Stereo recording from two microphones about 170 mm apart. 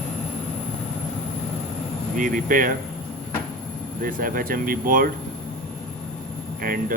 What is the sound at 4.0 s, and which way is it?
Speech, 55° right (ahead or behind).